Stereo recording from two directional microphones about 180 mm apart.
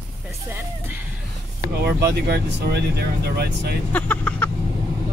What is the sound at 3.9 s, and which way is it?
Vehicle, 10° left (ahead or behind).